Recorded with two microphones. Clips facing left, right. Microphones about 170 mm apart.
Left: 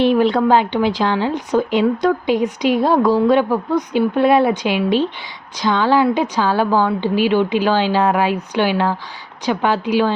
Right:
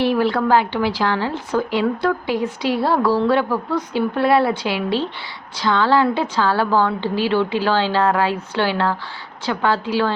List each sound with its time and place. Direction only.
0.0 s a woman's voice: 20° left (ahead or behind)